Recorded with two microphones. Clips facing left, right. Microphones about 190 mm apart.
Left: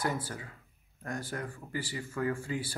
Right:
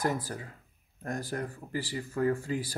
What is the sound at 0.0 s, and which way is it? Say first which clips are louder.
Speech: right 3 dB; 40° right (ahead or behind).